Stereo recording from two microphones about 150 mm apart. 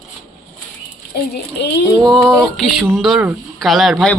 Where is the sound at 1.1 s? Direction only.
90° left.